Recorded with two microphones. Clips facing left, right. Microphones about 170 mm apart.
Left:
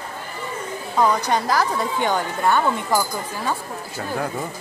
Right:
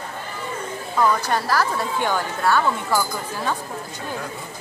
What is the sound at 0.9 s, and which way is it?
A woman's voice, 20° left (ahead or behind).